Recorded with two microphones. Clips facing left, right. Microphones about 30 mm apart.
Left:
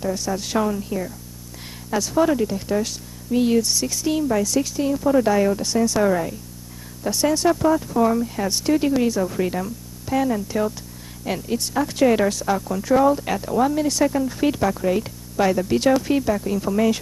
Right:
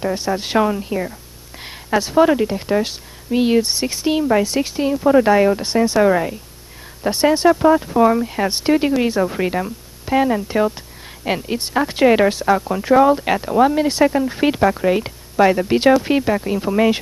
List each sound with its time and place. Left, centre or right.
0.0 s a woman's voice: right